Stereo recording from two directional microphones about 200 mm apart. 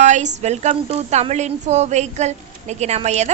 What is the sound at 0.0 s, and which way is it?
A woman's voice, 35° right (ahead or behind).